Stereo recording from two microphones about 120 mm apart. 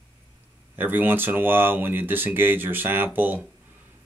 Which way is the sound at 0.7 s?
15° right (ahead or behind).